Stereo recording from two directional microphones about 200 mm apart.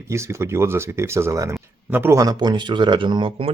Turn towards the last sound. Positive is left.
turn(degrees=-25)  # may be behind; listen again after turning